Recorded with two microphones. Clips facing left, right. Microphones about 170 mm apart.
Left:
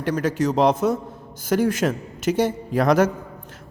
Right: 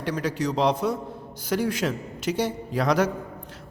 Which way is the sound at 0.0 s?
50° left (ahead or behind).